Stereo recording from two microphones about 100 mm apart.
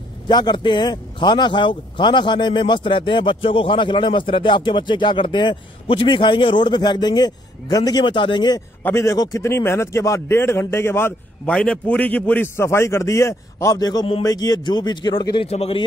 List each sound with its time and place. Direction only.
0.3 s a man's voice: 45° left (ahead or behind)
8.0 s a man's voice: 55° left (ahead or behind)
8.8 s a man's voice: 30° left (ahead or behind)
11.4 s a man's voice: 10° left (ahead or behind); by 15.4 s 55° left (ahead or behind)
15.4 s speech: 85° left